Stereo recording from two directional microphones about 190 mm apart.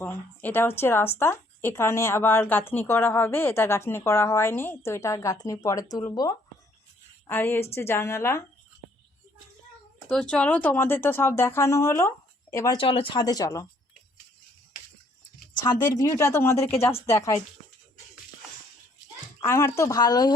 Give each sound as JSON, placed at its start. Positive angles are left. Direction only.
{"t": 0.0, "sound": "a woman's voice", "side_deg": 10}
{"t": 10.1, "sound": "a woman's voice", "side_deg": 5}
{"t": 12.7, "sound": "speech", "side_deg": 30}
{"t": 15.6, "sound": "a woman's voice", "side_deg": 20}
{"t": 19.4, "sound": "a woman's voice", "side_deg": 15}